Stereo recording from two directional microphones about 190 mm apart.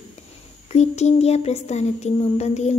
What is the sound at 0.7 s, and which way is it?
Speech, 35° left (ahead or behind).